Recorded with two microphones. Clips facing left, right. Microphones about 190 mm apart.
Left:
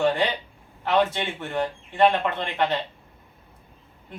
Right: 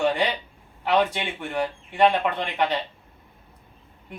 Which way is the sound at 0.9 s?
15° right (ahead or behind).